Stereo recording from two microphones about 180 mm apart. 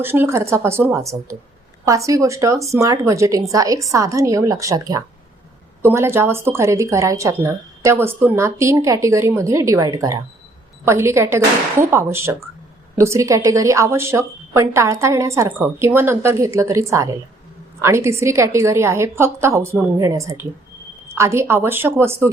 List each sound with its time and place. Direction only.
0.0 s speech: 10° right (ahead or behind)